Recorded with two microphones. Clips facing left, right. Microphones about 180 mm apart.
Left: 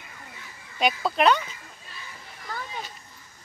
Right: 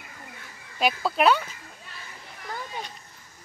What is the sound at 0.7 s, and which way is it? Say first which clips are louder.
Speech: even; 5° right (ahead or behind).